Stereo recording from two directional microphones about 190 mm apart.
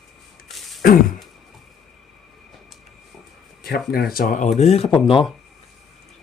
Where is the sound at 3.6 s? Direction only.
55° left (ahead or behind).